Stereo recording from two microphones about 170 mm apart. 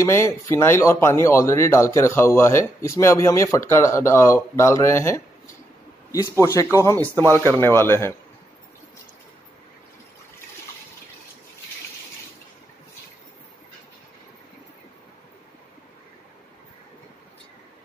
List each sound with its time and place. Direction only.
0.0 s speech: 15° left (ahead or behind)